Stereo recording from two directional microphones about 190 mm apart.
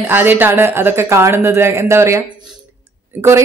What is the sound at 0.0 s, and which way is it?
A woman's voice, 10° right (ahead or behind).